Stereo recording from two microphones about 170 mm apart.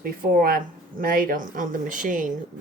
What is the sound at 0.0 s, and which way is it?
Speech, 60° right (ahead or behind).